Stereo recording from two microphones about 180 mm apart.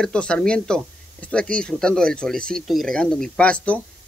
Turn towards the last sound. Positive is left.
turn(degrees=5)  # may be behind; listen again after turning